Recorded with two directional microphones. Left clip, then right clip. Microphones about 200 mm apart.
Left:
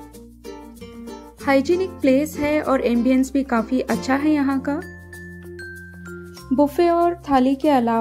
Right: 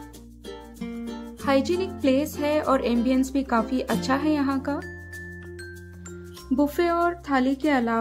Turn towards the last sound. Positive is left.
turn(degrees=15)  # may be behind; listen again after turning